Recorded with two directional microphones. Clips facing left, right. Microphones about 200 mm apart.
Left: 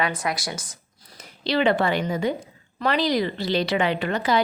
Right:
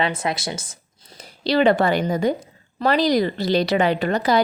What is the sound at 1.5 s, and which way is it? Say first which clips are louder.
A woman's voice: right 4 dB; 40° right (ahead or behind).